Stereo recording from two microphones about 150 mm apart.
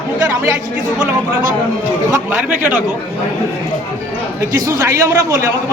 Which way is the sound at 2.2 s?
10° right (ahead or behind).